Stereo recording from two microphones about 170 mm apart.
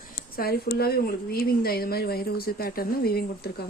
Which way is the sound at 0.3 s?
60° left (ahead or behind).